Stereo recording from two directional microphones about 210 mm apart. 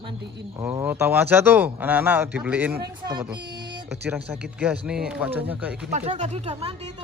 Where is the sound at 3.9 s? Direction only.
10° right (ahead or behind).